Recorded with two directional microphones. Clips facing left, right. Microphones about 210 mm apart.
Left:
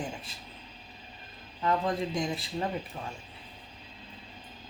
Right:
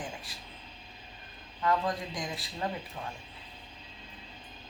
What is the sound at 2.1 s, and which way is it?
Speech, 25° left (ahead or behind).